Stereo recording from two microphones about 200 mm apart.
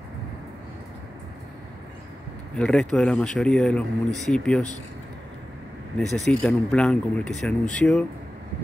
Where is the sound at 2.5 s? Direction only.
5° left (ahead or behind).